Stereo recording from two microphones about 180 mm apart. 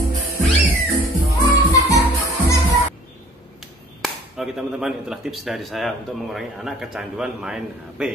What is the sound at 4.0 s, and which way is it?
Speech, centre (ahead or behind).